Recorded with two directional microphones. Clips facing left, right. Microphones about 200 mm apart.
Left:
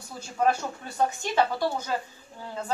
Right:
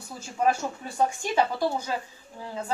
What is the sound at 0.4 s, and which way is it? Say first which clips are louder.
Speech: even; 10° right (ahead or behind).